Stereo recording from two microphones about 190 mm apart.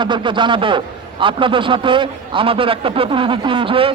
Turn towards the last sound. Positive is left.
turn(degrees=-30)  # may be behind; listen again after turning